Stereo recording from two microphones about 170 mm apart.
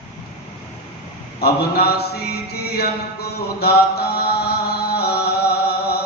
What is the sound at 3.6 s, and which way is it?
Chant, 70° left (ahead or behind).